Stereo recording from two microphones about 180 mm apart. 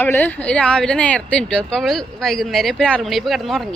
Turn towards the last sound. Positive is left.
turn(degrees=0)  # may be behind; listen again after turning